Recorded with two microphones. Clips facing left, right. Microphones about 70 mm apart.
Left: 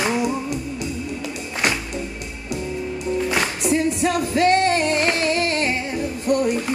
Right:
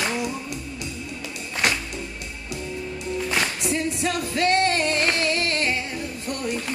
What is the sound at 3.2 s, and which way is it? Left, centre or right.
Music, centre.